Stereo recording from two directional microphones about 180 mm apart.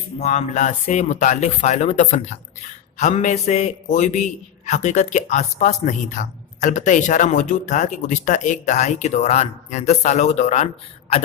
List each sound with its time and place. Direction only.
0.2 s speech: 40° left (ahead or behind)